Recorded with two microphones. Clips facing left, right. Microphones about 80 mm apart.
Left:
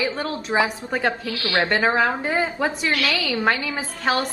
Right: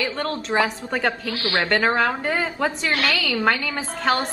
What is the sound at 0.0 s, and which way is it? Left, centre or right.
A woman's voice, centre.